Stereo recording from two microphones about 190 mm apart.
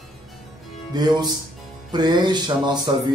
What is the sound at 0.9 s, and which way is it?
A man's voice, 20° right (ahead or behind).